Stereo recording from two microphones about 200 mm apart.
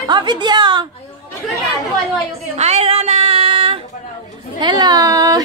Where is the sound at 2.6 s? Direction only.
30° right (ahead or behind).